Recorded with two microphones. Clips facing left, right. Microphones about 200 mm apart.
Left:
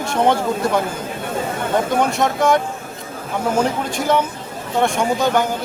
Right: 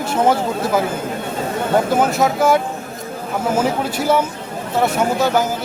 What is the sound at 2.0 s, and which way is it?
A man's voice, 5° right (ahead or behind).